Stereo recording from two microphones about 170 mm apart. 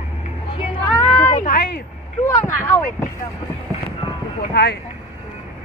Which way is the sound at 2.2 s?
15° left (ahead or behind).